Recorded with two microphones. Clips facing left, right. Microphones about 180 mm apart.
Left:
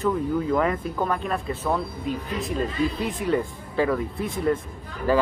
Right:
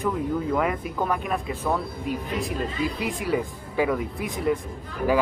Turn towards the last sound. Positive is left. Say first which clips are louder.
# even
turn(degrees=-15)  # may be behind; listen again after turning